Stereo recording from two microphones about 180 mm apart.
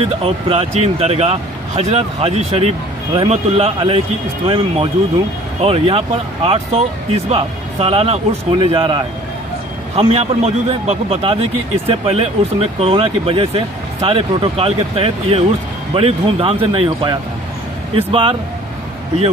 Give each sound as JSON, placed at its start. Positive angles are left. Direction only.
{"t": 0.2, "sound": "speech", "side_deg": -35}
{"t": 5.6, "sound": "speech", "side_deg": -30}